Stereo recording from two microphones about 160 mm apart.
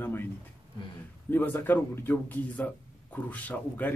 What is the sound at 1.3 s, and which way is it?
A man's voice, 10° left (ahead or behind).